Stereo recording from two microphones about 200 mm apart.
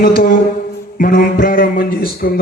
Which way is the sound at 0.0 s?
45° left (ahead or behind).